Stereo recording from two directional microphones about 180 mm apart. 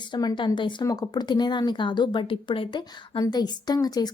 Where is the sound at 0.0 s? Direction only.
25° left (ahead or behind).